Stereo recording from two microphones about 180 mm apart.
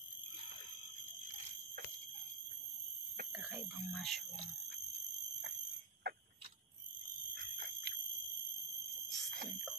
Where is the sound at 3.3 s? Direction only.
10° right (ahead or behind).